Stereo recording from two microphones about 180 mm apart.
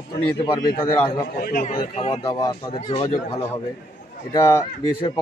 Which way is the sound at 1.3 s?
55° left (ahead or behind).